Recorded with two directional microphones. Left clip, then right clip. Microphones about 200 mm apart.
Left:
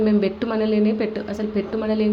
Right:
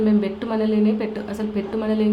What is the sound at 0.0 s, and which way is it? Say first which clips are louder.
A woman's voice: left 2 dB; 15° left (ahead or behind).